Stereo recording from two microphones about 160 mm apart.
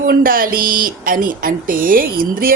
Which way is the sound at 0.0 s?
60° right (ahead or behind).